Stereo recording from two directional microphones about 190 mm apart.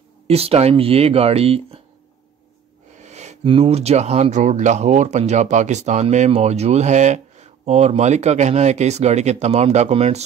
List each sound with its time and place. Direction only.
0.3 s speech: 30° right (ahead or behind)
3.0 s speech: 35° right (ahead or behind)